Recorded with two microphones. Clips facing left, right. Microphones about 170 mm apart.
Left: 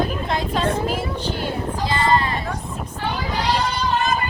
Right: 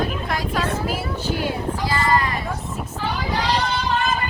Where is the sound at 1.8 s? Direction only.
25° left (ahead or behind).